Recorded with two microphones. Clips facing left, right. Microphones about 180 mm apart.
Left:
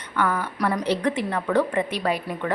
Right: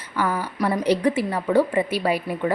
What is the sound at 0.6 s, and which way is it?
Speech, 25° right (ahead or behind).